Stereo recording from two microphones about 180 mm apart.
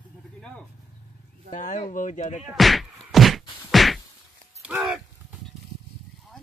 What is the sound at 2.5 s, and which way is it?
Whack, centre (ahead or behind).